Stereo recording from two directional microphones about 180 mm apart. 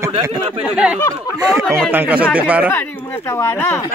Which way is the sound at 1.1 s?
20° right (ahead or behind).